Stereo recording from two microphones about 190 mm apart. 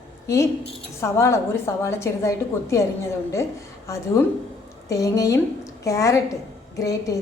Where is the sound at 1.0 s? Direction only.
15° left (ahead or behind).